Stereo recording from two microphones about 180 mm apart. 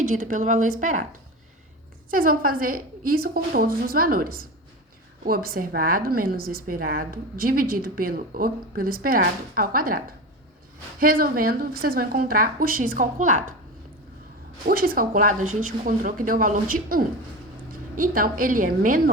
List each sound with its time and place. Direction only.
0.0 s a woman's voice: 45° right (ahead or behind)
2.0 s a woman's voice: 50° right (ahead or behind)
11.0 s a woman's voice: 55° right (ahead or behind)
14.6 s a woman's voice: 55° right (ahead or behind)